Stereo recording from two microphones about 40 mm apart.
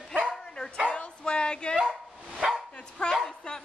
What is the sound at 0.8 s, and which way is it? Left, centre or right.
Bow-wow, left.